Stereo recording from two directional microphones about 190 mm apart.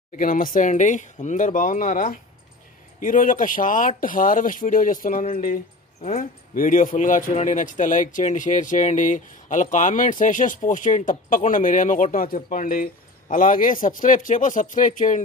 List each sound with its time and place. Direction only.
0.2 s a man's voice: 45° left (ahead or behind)